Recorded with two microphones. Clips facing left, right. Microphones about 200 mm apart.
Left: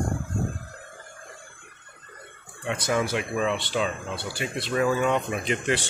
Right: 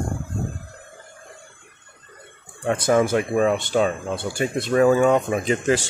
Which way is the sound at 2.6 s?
45° right (ahead or behind).